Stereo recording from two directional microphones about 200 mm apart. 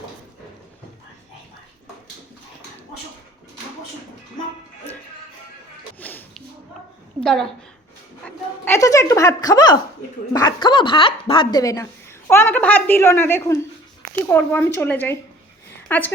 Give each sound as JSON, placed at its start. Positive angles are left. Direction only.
{"t": 6.0, "sound": "music", "side_deg": 10}
{"t": 7.2, "sound": "a woman's voice", "side_deg": 0}